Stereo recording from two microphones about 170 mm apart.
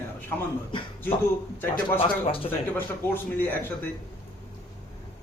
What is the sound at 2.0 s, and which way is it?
Speech, 30° left (ahead or behind).